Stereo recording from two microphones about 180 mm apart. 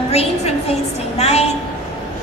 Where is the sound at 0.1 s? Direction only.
35° left (ahead or behind).